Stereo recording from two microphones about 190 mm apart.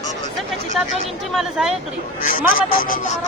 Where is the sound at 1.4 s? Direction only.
5° right (ahead or behind).